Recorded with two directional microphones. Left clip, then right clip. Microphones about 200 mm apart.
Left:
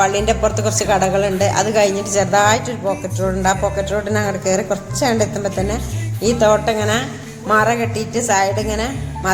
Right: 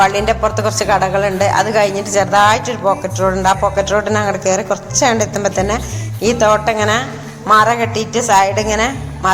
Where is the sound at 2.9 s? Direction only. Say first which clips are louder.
Right 7 dB; 5° left (ahead or behind).